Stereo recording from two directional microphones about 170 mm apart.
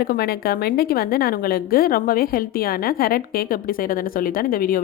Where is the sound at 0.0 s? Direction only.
65° left (ahead or behind).